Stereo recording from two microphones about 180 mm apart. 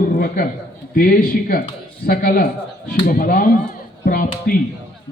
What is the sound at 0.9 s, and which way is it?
Speech, 55° left (ahead or behind).